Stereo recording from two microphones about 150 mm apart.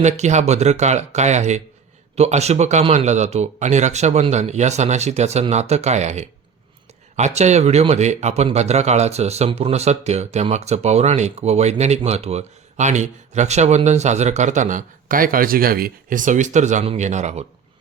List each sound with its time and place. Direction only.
0.0 s speech: 50° right (ahead or behind)